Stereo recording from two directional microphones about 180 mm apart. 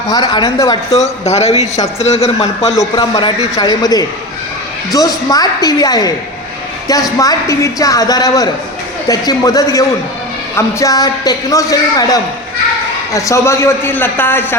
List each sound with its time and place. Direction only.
0.1 s a woman's voice: 20° left (ahead or behind)
1.2 s a man's voice: 35° left (ahead or behind)
2.7 s a woman's voice: 20° left (ahead or behind)
7.2 s a woman's voice: 20° left (ahead or behind)